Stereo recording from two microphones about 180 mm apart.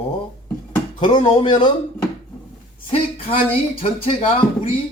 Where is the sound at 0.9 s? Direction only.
25° left (ahead or behind).